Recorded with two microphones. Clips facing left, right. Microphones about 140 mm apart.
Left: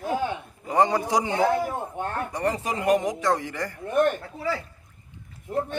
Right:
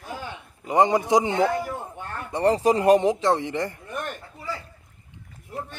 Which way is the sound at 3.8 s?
55° left (ahead or behind).